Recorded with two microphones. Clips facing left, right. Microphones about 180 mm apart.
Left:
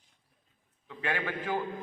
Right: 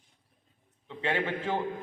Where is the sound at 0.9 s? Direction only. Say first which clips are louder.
Right 3 dB; 25° right (ahead or behind).